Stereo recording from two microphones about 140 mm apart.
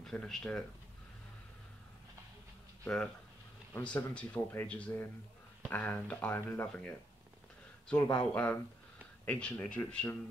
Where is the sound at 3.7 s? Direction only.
10° left (ahead or behind).